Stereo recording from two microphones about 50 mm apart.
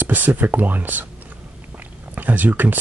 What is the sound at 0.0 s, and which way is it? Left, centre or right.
Speech, right.